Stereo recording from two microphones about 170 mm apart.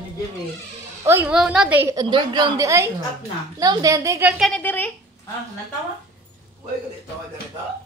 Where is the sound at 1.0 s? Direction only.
10° right (ahead or behind).